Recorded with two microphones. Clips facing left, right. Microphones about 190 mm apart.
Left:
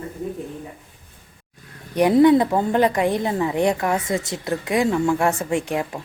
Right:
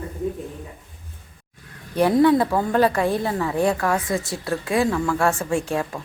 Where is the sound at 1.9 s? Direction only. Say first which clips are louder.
Left 2 dB; 15° left (ahead or behind).